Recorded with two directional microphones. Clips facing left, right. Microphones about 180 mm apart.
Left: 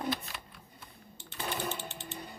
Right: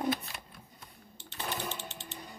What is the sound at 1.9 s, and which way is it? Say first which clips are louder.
Sewing machine: left 2 dB; 55° left (ahead or behind).